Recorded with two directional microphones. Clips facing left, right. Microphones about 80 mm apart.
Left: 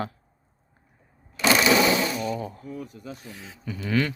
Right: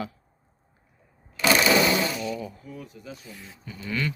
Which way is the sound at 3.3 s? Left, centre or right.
Left.